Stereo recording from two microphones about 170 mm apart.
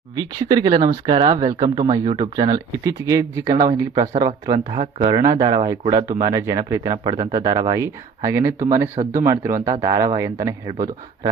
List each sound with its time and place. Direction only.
0.2 s speech: 25° right (ahead or behind)
3.5 s speech: 35° right (ahead or behind)
5.9 s speech: 20° right (ahead or behind)